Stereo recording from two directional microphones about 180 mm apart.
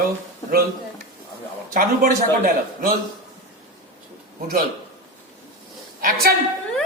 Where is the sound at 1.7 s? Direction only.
50° right (ahead or behind).